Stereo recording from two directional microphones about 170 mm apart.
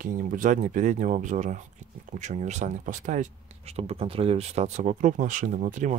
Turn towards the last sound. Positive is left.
turn(degrees=-50)  # may be behind; listen again after turning